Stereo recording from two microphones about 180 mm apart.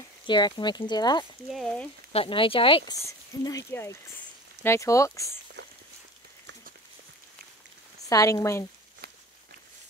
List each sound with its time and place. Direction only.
0.3 s speech: 25° left (ahead or behind)
1.5 s speech: 5° left (ahead or behind)
2.1 s speech: 30° left (ahead or behind)
3.0 s speech: 20° left (ahead or behind)
8.1 s speech: 20° left (ahead or behind)